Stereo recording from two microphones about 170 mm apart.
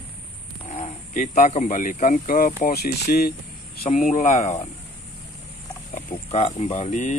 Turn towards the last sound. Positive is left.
turn(degrees=45)  # may be behind; listen again after turning